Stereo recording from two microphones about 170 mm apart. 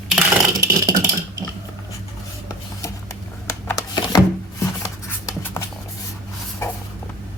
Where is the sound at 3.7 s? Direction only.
20° left (ahead or behind).